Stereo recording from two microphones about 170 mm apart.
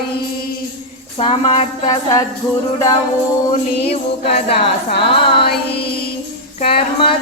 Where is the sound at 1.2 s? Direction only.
35° left (ahead or behind).